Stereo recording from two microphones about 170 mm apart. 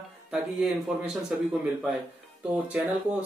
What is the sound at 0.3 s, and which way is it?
Speech, 5° right (ahead or behind).